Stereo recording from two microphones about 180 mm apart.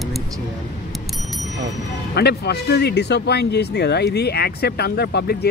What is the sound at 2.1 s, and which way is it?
Speech, 65° left (ahead or behind).